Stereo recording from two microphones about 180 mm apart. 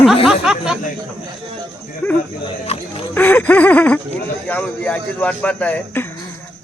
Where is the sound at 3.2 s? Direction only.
10° left (ahead or behind).